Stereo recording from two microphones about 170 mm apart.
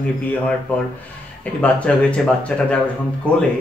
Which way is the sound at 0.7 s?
10° left (ahead or behind).